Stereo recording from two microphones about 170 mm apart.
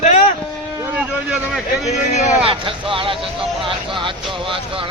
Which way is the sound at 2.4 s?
30° right (ahead or behind).